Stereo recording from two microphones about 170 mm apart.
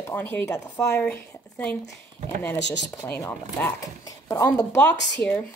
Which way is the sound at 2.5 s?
90° left.